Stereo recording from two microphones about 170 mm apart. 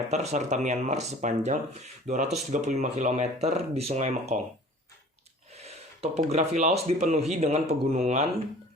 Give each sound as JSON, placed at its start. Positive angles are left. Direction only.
{"t": 0.1, "sound": "speech", "side_deg": -40}
{"t": 5.5, "sound": "speech", "side_deg": -40}